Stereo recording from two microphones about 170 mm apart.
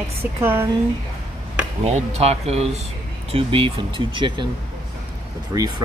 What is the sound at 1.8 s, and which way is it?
Speech, 40° right (ahead or behind).